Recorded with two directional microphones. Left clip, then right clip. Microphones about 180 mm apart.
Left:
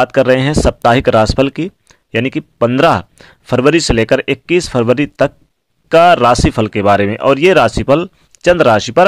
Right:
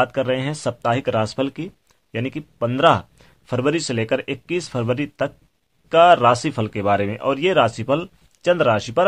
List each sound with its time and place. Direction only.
0.0 s speech: 40° left (ahead or behind)